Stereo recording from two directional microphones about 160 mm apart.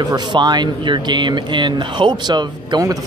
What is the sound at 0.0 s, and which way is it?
Speech, 25° right (ahead or behind).